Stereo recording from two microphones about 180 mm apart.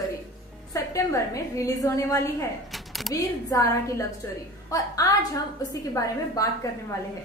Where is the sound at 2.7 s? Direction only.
Centre (ahead or behind).